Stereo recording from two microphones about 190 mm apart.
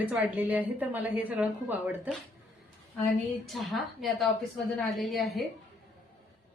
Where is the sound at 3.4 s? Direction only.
Centre (ahead or behind).